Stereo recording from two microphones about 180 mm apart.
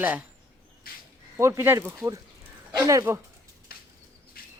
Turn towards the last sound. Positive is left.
turn(degrees=55)  # may be behind; listen again after turning